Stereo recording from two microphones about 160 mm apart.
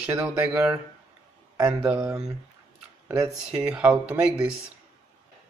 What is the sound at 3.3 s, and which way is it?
Speech, 5° right (ahead or behind).